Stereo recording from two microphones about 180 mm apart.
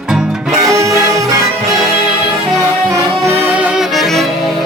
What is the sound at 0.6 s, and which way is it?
Music, 20° right (ahead or behind).